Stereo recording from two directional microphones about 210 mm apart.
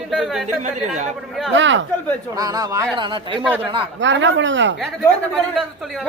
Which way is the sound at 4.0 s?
60° right (ahead or behind).